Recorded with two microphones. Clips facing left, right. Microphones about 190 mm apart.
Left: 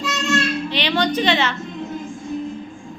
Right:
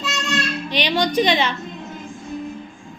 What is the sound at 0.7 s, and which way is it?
Speech, 15° right (ahead or behind).